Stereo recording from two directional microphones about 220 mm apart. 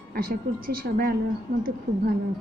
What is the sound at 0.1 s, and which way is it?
A woman's voice, 45° right (ahead or behind).